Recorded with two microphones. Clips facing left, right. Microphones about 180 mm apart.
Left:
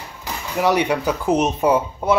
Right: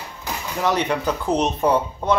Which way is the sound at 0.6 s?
10° left (ahead or behind).